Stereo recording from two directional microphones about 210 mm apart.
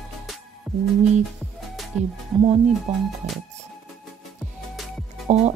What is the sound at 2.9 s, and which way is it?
Speech, 35° right (ahead or behind).